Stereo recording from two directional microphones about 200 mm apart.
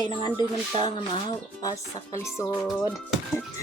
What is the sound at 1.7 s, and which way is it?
Speech, 15° left (ahead or behind).